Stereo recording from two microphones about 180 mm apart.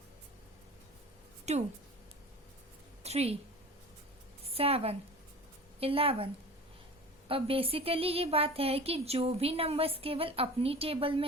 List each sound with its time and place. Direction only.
1.5 s a woman's voice: 40° right (ahead or behind)
3.0 s a sound: 35° right (ahead or behind)
4.4 s a woman's voice: 35° right (ahead or behind)
7.3 s a woman's voice: 30° right (ahead or behind)